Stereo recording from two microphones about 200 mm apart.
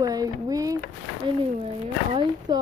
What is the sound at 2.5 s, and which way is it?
Speech, 20° right (ahead or behind).